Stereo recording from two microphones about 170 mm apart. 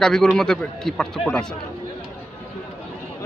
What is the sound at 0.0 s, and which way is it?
Speech, centre (ahead or behind).